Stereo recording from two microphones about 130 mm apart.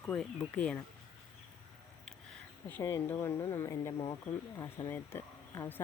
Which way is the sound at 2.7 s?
15° left (ahead or behind).